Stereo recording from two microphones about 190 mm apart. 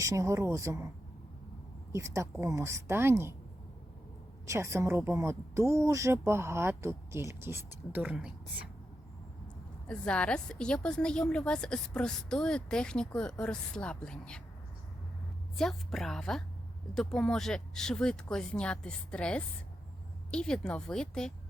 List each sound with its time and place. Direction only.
0.0 s speech: 15° right (ahead or behind)
1.9 s speech: 15° right (ahead or behind)
4.4 s speech: 15° right (ahead or behind)
9.9 s a woman's voice: 5° left (ahead or behind)
15.5 s a woman's voice: centre (ahead or behind)